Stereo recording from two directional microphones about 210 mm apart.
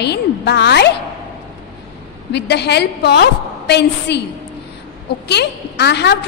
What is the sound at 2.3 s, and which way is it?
A woman's voice, 55° left (ahead or behind).